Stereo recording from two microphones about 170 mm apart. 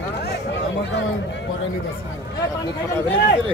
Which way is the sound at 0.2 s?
90° left.